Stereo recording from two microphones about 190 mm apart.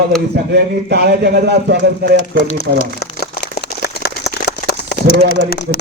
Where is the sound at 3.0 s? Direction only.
55° left (ahead or behind).